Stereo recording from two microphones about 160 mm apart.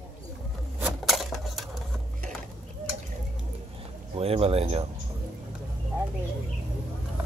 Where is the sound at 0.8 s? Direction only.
Centre (ahead or behind).